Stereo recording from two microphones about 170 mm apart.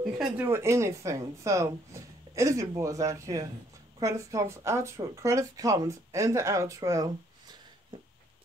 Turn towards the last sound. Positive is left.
turn(degrees=-20)  # may be behind; listen again after turning